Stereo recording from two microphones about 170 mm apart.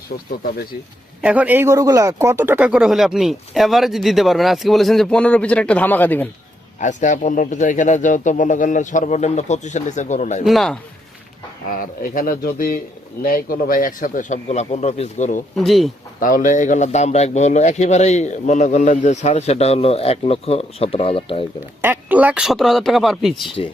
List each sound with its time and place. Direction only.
1.2 s speech: 10° right (ahead or behind); by 6.2 s 10° left (ahead or behind)
6.7 s speech: 45° left (ahead or behind)
10.4 s speech: centre (ahead or behind)
11.8 s speech: 55° left (ahead or behind)
15.5 s speech: centre (ahead or behind)
16.2 s a man's voice: 50° left (ahead or behind); by 21.4 s 35° left (ahead or behind)
21.8 s speech: 10° right (ahead or behind)
23.6 s a man's voice: 35° left (ahead or behind)